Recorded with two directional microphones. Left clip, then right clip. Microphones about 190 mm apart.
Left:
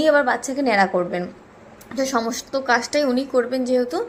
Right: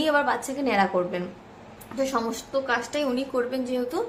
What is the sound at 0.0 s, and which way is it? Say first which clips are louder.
A woman's voice: left 6 dB; 20° left (ahead or behind).